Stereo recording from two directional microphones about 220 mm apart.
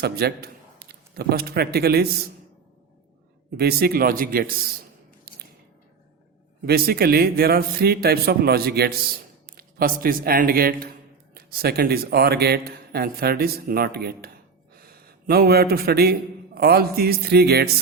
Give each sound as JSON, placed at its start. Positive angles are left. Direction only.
{"t": 0.0, "sound": "a man's voice", "side_deg": -45}
{"t": 3.6, "sound": "speech", "side_deg": -45}
{"t": 5.3, "sound": "squish", "side_deg": -45}
{"t": 6.7, "sound": "a man's voice", "side_deg": -45}